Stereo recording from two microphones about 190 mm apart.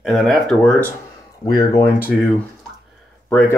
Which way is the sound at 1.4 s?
15° left (ahead or behind).